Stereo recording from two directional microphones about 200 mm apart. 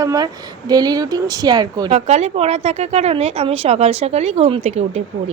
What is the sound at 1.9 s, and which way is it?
A woman's voice, 35° right (ahead or behind).